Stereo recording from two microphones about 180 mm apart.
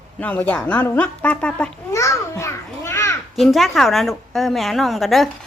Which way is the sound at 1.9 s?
15° left (ahead or behind).